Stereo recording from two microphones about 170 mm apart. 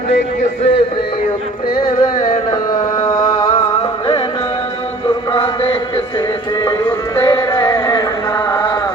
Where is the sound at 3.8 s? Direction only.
30° left (ahead or behind).